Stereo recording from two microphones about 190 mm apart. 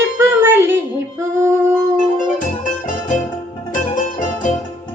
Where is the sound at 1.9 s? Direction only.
45° left (ahead or behind).